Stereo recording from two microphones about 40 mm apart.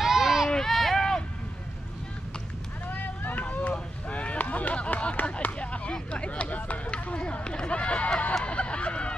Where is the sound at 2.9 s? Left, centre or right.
Left.